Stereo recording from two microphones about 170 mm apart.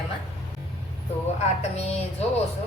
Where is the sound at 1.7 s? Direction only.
40° left (ahead or behind).